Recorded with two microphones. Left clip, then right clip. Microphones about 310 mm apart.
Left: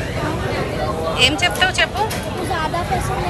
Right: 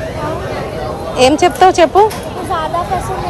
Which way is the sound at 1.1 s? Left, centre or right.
Right.